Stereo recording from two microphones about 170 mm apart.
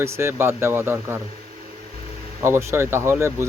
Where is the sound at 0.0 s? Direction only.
15° right (ahead or behind).